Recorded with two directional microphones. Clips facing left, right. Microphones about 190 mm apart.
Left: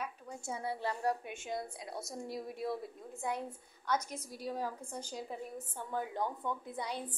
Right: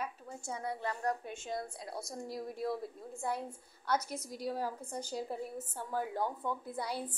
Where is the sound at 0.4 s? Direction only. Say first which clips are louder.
Even; 20° left (ahead or behind).